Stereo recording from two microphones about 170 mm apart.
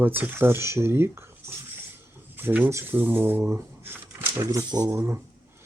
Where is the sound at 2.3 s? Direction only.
10° right (ahead or behind).